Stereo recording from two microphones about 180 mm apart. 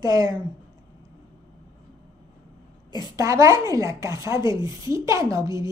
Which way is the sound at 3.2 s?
15° right (ahead or behind).